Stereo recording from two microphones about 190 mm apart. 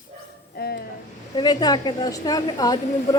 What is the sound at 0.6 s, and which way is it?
Speech, 55° left (ahead or behind).